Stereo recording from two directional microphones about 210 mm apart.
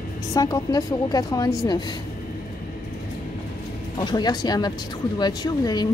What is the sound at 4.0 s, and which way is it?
Speech, 20° left (ahead or behind).